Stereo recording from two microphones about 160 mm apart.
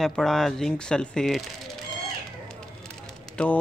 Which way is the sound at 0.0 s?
5° left (ahead or behind).